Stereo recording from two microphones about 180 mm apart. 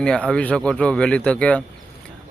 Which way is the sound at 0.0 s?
5° left (ahead or behind).